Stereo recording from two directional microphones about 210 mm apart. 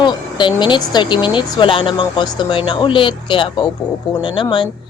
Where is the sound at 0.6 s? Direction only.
20° left (ahead or behind).